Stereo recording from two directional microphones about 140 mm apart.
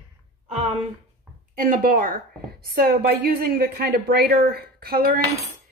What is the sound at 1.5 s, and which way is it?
A woman's voice, 75° right (ahead or behind).